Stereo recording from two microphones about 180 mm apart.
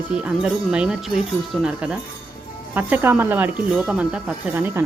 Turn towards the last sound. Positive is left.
turn(degrees=-10)  # may be behind; listen again after turning